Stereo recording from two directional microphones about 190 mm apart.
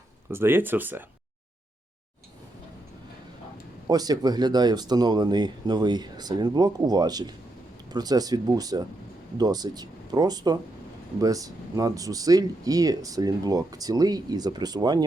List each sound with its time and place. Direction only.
0.3 s speech: 10° right (ahead or behind)
3.8 s speech: 20° right (ahead or behind)